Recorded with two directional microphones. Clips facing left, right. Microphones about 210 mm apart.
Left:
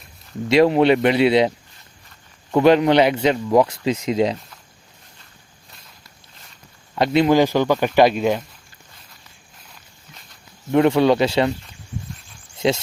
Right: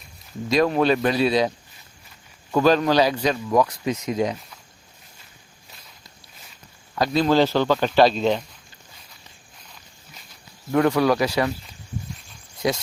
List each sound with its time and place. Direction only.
0.4 s speech: 25° left (ahead or behind)
6.9 s speech: 25° left (ahead or behind)
10.7 s speech: 25° left (ahead or behind)
12.5 s a sound: 25° left (ahead or behind)